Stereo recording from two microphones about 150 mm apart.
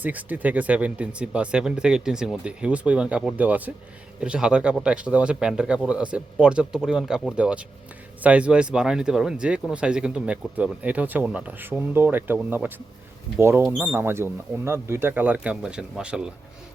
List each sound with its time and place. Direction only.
0.0 s speech: 10° right (ahead or behind)